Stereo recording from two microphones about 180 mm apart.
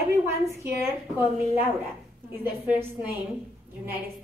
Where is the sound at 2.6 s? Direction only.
10° right (ahead or behind).